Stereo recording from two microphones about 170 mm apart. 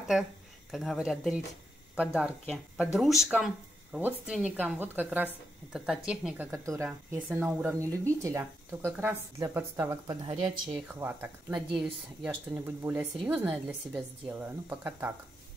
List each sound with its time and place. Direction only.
0.1 s speech: 5° right (ahead or behind)
2.5 s speech: centre (ahead or behind)